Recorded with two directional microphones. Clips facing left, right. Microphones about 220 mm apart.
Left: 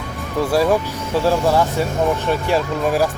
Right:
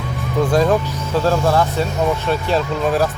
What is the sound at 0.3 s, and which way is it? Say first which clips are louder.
Speech: right 1 dB; 5° left (ahead or behind).